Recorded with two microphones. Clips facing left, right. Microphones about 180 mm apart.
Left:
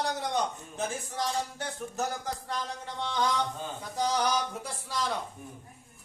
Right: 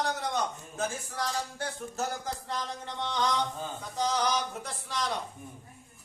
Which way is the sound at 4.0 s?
10° left (ahead or behind).